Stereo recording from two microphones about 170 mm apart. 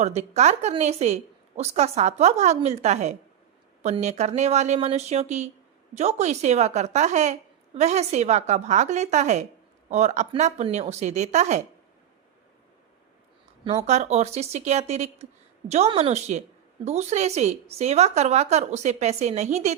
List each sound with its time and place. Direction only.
0.0 s a woman's voice: 40° right (ahead or behind)
13.8 s a woman's voice: 40° right (ahead or behind)